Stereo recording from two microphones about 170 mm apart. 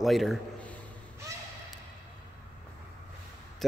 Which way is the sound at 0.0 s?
Centre (ahead or behind).